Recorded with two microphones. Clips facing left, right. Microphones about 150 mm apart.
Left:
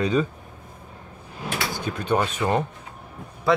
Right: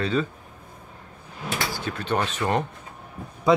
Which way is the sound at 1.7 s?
15° left (ahead or behind).